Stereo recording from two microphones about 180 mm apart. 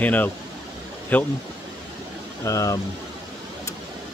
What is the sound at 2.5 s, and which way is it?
Speech, 20° left (ahead or behind).